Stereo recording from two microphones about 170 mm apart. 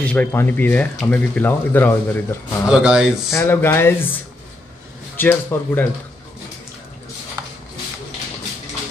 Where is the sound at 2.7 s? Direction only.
5° right (ahead or behind).